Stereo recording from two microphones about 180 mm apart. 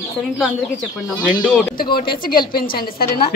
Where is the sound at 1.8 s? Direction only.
55° left (ahead or behind).